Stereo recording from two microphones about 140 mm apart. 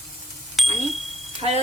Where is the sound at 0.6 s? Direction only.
Centre (ahead or behind).